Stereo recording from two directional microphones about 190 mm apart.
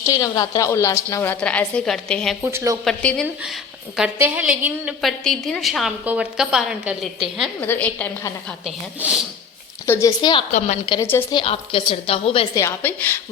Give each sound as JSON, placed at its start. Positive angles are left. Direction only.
{"t": 0.0, "sound": "a woman's voice", "side_deg": 15}
{"t": 2.4, "sound": "speech", "side_deg": -15}
{"t": 2.8, "sound": "a woman's voice", "side_deg": 5}
{"t": 3.9, "sound": "a woman's voice", "side_deg": -5}
{"t": 9.0, "sound": "speech", "side_deg": -5}
{"t": 9.8, "sound": "a woman's voice", "side_deg": 15}
{"t": 10.2, "sound": "a woman's voice", "side_deg": 25}
{"t": 11.0, "sound": "a woman's voice", "side_deg": 10}
{"t": 11.3, "sound": "a woman's voice", "side_deg": 30}
{"t": 12.5, "sound": "a woman's voice", "side_deg": 10}